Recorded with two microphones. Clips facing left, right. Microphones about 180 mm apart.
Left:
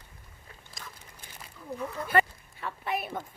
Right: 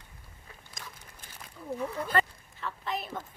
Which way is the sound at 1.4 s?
5° right (ahead or behind).